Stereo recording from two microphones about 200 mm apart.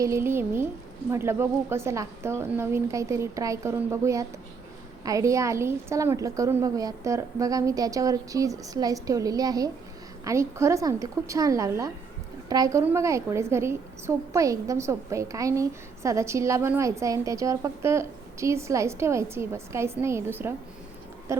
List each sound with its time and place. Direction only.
0.0 s a woman's voice: 15° right (ahead or behind)